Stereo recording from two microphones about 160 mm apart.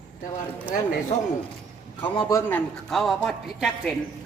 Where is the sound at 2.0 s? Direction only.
25° left (ahead or behind).